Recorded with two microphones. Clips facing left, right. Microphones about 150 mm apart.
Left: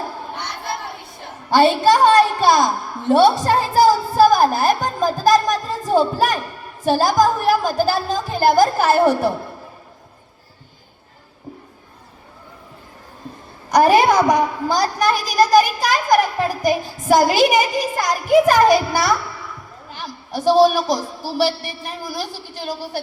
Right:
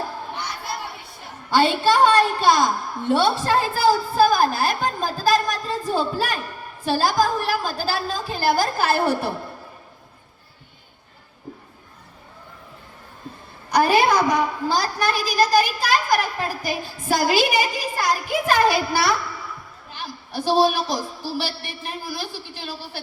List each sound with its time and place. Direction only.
1.5 s a woman's voice: 45° left (ahead or behind)
13.7 s a woman's voice: 45° left (ahead or behind)